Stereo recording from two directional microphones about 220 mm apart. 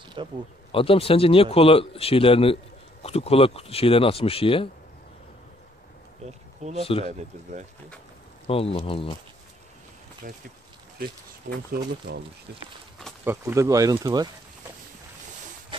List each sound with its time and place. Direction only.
0.2 s speech: 20° right (ahead or behind)
0.7 s a man's voice: 25° left (ahead or behind)
6.8 s a man's voice: 25° left (ahead or behind)
7.1 s speech: 30° right (ahead or behind)
8.5 s a man's voice: 25° left (ahead or behind)
10.2 s speech: 35° right (ahead or behind)
11.4 s speech: 50° right (ahead or behind)
13.2 s speech: 10° right (ahead or behind)
15.7 s a sound: 20° right (ahead or behind)